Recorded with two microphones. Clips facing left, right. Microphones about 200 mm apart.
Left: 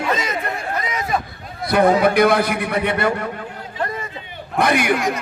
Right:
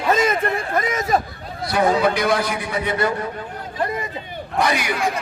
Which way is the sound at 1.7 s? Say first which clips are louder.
Left 4 dB; 55° left (ahead or behind).